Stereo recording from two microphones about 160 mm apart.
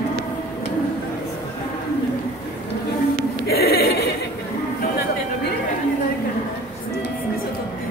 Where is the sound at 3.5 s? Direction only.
75° left (ahead or behind).